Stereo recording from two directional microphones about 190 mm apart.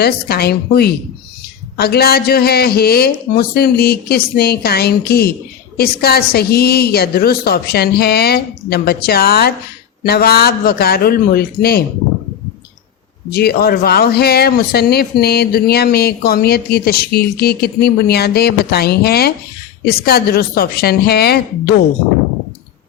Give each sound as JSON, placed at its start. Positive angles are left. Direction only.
{"t": 0.0, "sound": "speech", "side_deg": 55}
{"t": 13.3, "sound": "a woman's voice", "side_deg": 55}